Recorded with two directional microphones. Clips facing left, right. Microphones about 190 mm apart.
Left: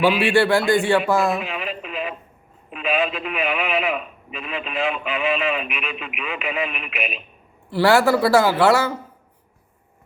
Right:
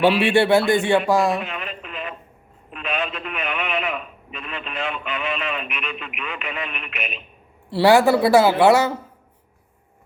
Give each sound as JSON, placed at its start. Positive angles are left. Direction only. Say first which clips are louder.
{"t": 0.3, "sound": "a woman's voice", "louder": "right 1 dB", "side_deg": -20}
{"t": 1.4, "sound": "radio", "louder": "left 2 dB", "side_deg": 5}
{"t": 2.6, "sound": "a man's voice", "louder": "left 5 dB", "side_deg": 5}
{"t": 7.7, "sound": "a woman's voice", "louder": "right 1 dB", "side_deg": -20}